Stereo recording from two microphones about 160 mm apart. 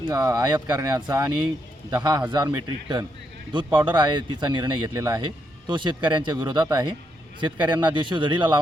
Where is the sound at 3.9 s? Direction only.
30° right (ahead or behind).